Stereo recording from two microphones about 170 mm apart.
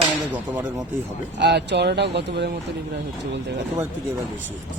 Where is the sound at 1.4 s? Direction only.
80° right.